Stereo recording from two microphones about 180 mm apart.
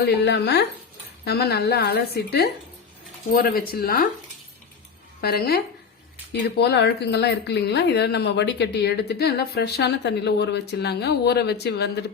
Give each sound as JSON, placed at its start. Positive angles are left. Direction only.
{"t": 0.3, "sound": "a woman's voice", "side_deg": 70}
{"t": 5.2, "sound": "a woman's voice", "side_deg": 60}